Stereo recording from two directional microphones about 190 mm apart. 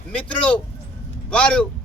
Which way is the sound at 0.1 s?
5° left (ahead or behind).